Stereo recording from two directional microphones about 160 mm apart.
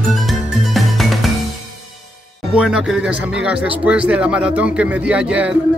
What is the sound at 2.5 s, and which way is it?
Speech, 5° right (ahead or behind).